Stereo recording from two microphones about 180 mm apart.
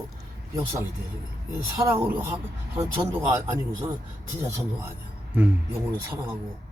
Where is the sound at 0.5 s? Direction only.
15° right (ahead or behind).